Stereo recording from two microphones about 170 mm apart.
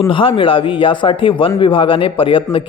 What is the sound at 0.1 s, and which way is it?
A man's voice, 30° left (ahead or behind).